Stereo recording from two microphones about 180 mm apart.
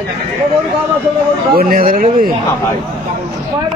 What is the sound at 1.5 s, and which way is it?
Speech, 55° right (ahead or behind).